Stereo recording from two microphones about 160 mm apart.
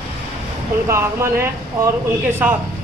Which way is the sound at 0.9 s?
15° right (ahead or behind).